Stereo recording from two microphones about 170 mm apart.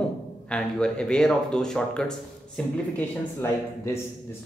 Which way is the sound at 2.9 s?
15° left (ahead or behind).